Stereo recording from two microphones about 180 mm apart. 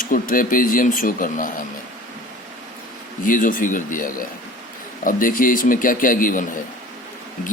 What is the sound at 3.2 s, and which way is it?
A man's voice, 50° left (ahead or behind).